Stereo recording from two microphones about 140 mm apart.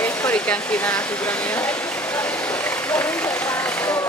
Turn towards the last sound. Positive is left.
turn(degrees=15)  # may be behind; listen again after turning